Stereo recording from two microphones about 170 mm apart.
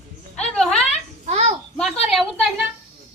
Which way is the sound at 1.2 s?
40° right (ahead or behind).